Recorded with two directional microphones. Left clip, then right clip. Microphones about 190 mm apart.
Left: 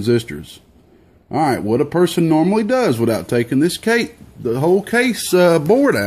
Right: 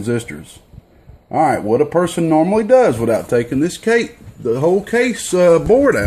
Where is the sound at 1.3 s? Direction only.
30° left (ahead or behind).